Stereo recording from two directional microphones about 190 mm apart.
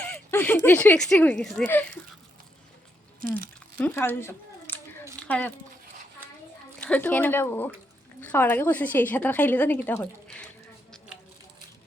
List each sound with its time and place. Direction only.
0.0 s speech: 10° left (ahead or behind)
3.2 s speech: 45° right (ahead or behind)
3.8 s a sound: 10° left (ahead or behind)
6.7 s a woman's voice: 5° left (ahead or behind)